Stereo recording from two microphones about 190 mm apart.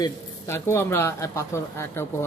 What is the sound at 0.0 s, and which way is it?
Speech, 15° left (ahead or behind).